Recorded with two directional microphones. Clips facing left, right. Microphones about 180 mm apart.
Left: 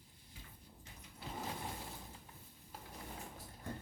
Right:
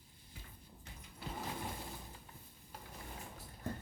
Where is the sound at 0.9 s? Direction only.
65° right (ahead or behind).